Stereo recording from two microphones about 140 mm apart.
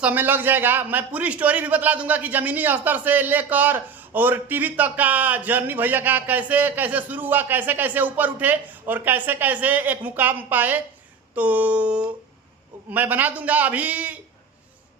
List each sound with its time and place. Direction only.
0.0 s a man's voice: 10° right (ahead or behind)